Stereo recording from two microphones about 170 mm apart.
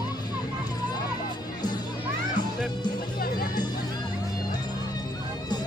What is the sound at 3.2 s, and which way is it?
Music, 60° left (ahead or behind).